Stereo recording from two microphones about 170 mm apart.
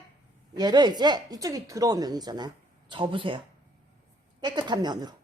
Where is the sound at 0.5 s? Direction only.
25° right (ahead or behind).